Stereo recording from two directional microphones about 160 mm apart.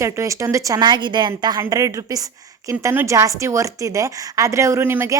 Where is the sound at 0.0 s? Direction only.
20° right (ahead or behind).